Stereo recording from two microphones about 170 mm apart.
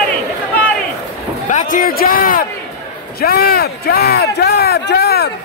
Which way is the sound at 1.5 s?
50° left (ahead or behind).